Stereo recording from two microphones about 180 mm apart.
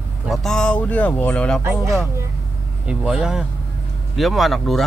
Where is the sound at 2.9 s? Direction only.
5° right (ahead or behind).